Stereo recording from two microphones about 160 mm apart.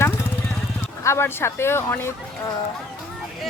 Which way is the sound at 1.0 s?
15° left (ahead or behind).